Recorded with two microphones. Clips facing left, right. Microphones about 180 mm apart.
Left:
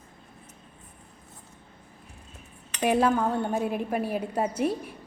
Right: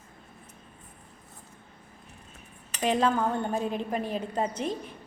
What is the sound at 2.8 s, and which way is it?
A woman's voice, 10° left (ahead or behind).